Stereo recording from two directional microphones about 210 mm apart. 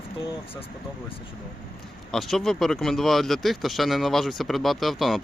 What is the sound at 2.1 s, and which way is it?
Speech, centre (ahead or behind).